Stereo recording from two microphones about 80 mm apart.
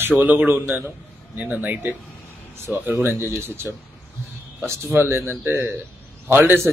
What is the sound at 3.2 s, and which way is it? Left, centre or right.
Speech, right.